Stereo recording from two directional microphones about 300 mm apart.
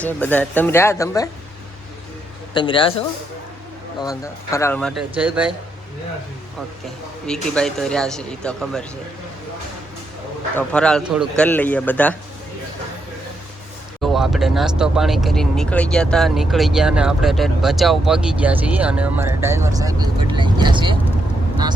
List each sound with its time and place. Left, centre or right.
0.0 s speech: centre
2.5 s speech: centre
4.0 s speech: centre
7.5 s speech: centre
10.5 s speech: centre
14.0 s speech: centre